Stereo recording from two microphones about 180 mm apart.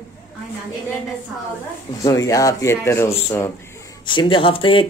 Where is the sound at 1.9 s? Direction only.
20° left (ahead or behind).